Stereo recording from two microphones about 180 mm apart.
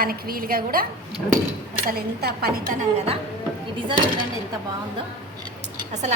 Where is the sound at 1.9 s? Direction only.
60° right (ahead or behind).